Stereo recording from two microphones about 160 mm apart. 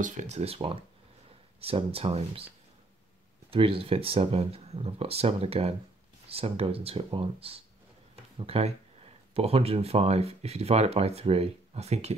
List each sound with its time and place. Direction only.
0.0 s speech: 50° right (ahead or behind)
3.4 s speech: 35° right (ahead or behind)